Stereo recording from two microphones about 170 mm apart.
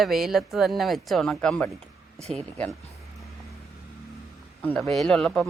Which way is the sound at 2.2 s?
40° right (ahead or behind).